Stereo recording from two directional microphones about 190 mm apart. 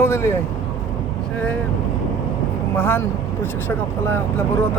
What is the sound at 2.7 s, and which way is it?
Speech, 10° left (ahead or behind).